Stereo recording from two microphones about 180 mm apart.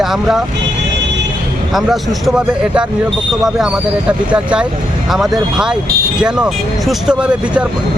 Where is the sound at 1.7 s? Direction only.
Centre (ahead or behind).